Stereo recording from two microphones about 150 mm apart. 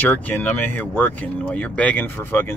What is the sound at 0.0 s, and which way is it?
Speech, 10° left (ahead or behind).